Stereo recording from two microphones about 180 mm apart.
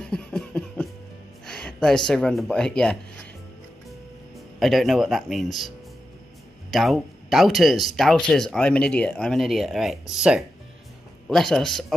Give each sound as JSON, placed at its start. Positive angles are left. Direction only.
{"t": 0.0, "sound": "beatboxing", "side_deg": 5}
{"t": 1.4, "sound": "speech", "side_deg": 5}
{"t": 4.6, "sound": "speech", "side_deg": 0}
{"t": 6.7, "sound": "speech", "side_deg": 0}